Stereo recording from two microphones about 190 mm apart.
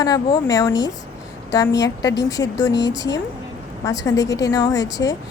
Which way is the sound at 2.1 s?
20° left (ahead or behind).